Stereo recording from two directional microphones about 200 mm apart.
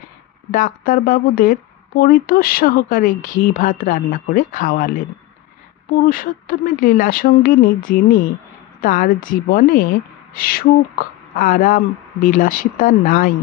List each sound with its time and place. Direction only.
0.5 s speech: 45° left (ahead or behind)
6.0 s speech: 45° left (ahead or behind)